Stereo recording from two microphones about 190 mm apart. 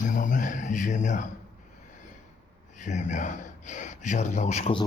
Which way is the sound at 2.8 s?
40° left (ahead or behind).